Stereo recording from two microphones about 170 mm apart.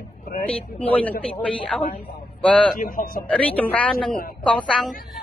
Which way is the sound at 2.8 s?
55° left (ahead or behind).